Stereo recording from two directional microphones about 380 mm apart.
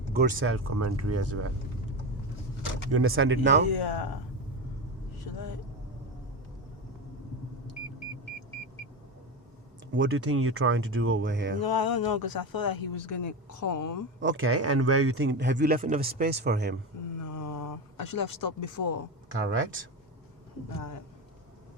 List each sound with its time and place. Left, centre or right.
0.1 s speech: right
2.9 s a man's voice: right
3.8 s speech: left
9.9 s speech: right
11.6 s speech: left
14.2 s a man's voice: right
17.2 s a sound: left
19.3 s speech: right